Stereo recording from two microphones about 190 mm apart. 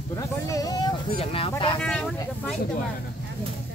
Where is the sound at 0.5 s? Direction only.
20° left (ahead or behind).